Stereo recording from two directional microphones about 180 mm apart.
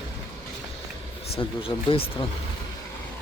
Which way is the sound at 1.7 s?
15° left (ahead or behind).